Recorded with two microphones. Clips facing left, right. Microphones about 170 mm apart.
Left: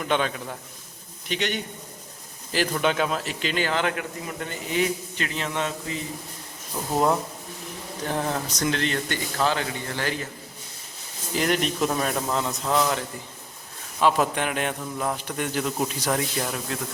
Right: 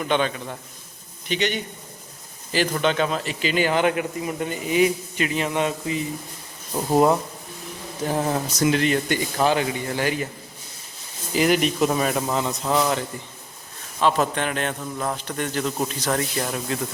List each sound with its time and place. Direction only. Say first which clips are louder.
0.0 s a man's voice: right 2 dB; centre (ahead or behind); by 6.0 s 15° right (ahead or behind)
6.8 s speech: right 5 dB; 30° right (ahead or behind)
8.0 s a man's voice: right 4 dB; 10° right (ahead or behind)
11.3 s speech: right 4 dB; 5° right (ahead or behind)
14.0 s a man's voice: right 1 dB; 10° left (ahead or behind)
16.4 s speech: right 3 dB; centre (ahead or behind)